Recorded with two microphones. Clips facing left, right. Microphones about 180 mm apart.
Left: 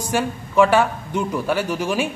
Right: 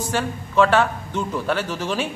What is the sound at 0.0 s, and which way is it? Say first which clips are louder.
A man's voice: left 2 dB; 10° left (ahead or behind).